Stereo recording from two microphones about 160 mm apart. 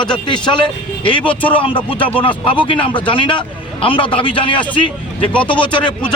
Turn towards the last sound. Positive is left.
turn(degrees=30)  # may be behind; listen again after turning